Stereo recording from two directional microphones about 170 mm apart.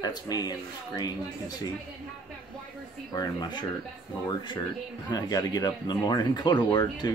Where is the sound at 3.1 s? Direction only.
25° left (ahead or behind).